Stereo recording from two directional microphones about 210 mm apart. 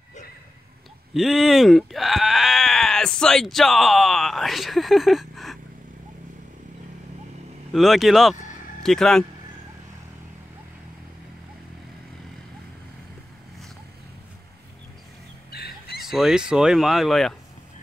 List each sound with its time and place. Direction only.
1.1 s sheep: centre (ahead or behind)
7.7 s speech: centre (ahead or behind)
15.5 s fowl: 50° left (ahead or behind)
16.0 s speech: centre (ahead or behind)